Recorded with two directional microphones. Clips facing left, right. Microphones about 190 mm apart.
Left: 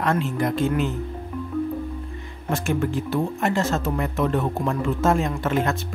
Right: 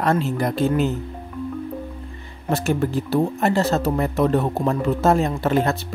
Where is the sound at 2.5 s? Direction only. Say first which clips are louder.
Right 2 dB; 35° right (ahead or behind).